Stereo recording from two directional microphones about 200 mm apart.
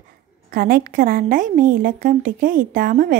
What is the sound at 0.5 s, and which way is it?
A woman's voice, 45° right (ahead or behind).